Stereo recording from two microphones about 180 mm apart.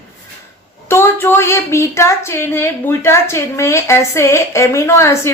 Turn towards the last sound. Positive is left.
turn(degrees=15)  # may be behind; listen again after turning